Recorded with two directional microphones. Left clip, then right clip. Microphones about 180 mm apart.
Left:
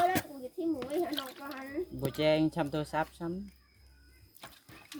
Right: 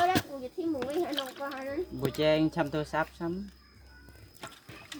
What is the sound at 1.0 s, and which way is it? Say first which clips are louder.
Speech: right 3 dB; 50° left (ahead or behind).